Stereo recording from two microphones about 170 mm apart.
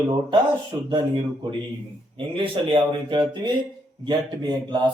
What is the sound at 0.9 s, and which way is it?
Speech, 30° right (ahead or behind).